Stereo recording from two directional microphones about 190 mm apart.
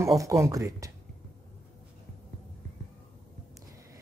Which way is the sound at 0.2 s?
15° right (ahead or behind).